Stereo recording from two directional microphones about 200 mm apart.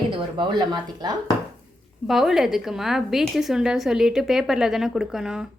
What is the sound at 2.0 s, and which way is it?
A woman's voice, centre (ahead or behind).